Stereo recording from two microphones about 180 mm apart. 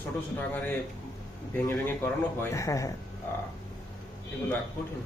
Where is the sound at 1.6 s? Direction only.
15° left (ahead or behind).